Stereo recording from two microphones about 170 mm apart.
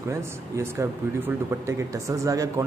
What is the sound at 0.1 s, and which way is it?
Speech, 15° right (ahead or behind).